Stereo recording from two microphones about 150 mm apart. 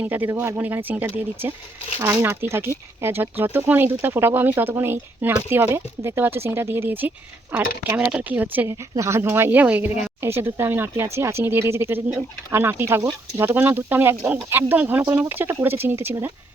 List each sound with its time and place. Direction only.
0.0 s speech: 10° right (ahead or behind)